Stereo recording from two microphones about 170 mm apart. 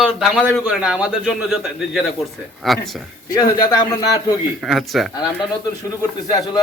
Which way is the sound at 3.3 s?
25° left (ahead or behind).